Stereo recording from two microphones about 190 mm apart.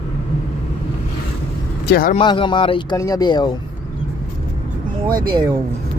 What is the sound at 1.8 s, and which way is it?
Speech, 50° left (ahead or behind).